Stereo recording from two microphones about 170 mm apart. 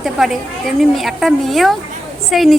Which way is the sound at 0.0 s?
Centre (ahead or behind).